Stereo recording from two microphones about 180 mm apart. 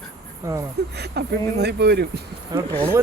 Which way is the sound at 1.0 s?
65° right (ahead or behind).